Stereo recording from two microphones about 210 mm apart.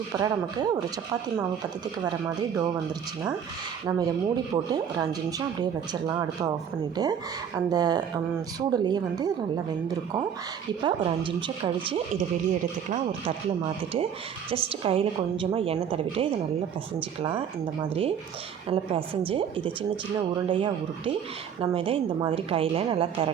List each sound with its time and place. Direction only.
0.1 s a woman's voice: 20° right (ahead or behind)
3.8 s a woman's voice: 15° right (ahead or behind)
10.8 s a woman's voice: 25° right (ahead or behind)
14.5 s a woman's voice: 25° right (ahead or behind)